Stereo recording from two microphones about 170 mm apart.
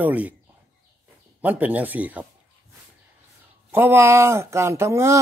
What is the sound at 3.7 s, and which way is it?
A man's voice, 10° right (ahead or behind).